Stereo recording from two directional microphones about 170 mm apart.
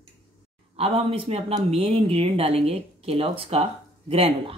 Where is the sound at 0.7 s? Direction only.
35° right (ahead or behind).